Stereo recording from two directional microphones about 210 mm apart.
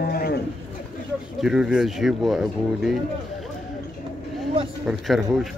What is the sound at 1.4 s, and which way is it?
Speech, 5° right (ahead or behind).